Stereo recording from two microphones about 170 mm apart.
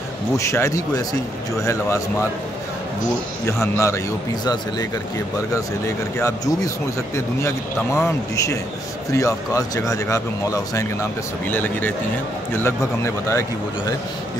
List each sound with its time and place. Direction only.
0.4 s speech: 15° left (ahead or behind)
3.7 s speech: 15° left (ahead or behind)
6.1 s speech: 20° left (ahead or behind)